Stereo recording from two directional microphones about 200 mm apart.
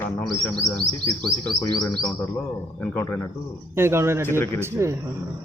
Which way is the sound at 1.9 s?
5° left (ahead or behind).